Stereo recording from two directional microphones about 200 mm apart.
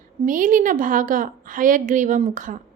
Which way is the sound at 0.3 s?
40° right (ahead or behind).